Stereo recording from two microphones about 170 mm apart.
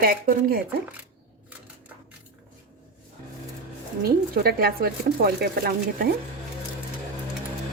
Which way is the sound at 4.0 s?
65° right (ahead or behind).